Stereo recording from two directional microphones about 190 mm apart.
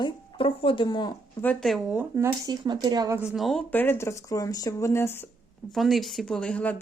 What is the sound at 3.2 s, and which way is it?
Speech, 5° right (ahead or behind).